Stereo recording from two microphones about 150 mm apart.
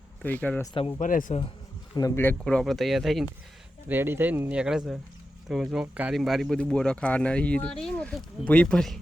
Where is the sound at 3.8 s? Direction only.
15° right (ahead or behind).